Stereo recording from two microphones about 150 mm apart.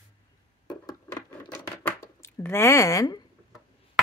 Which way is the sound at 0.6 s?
25° left (ahead or behind).